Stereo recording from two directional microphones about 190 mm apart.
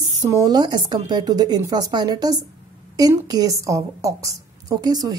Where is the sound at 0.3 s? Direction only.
20° right (ahead or behind).